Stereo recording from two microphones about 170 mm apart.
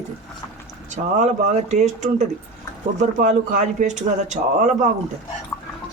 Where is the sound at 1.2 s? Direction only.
40° right (ahead or behind).